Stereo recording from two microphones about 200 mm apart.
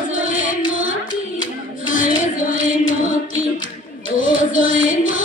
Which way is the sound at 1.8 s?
40° left (ahead or behind).